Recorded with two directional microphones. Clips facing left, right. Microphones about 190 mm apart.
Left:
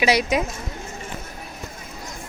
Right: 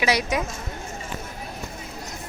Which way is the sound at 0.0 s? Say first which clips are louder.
Left 3 dB; 20° left (ahead or behind).